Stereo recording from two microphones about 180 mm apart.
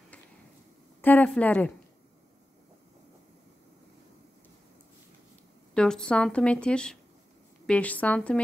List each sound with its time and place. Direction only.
1.0 s speech: 10° left (ahead or behind)
5.8 s a woman's voice: 5° left (ahead or behind)